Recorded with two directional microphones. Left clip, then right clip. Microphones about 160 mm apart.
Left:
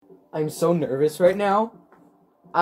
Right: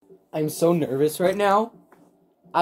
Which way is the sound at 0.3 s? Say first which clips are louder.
Right 1 dB; 35° right (ahead or behind).